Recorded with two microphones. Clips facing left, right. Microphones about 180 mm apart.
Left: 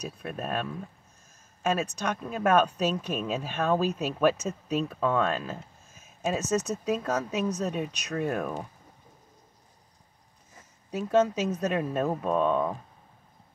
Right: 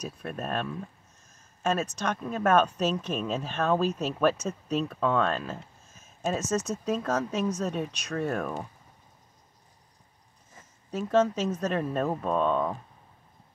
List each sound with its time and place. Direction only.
0.2 s a woman's voice: 5° left (ahead or behind)
10.9 s a woman's voice: 10° left (ahead or behind)